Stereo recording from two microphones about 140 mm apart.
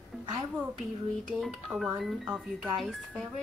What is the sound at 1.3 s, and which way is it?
Speech, 5° right (ahead or behind).